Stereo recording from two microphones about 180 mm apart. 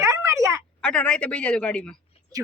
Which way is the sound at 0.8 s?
5° left (ahead or behind).